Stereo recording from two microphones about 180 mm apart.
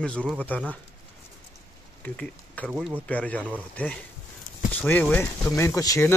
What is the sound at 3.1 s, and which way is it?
Speech, 10° left (ahead or behind).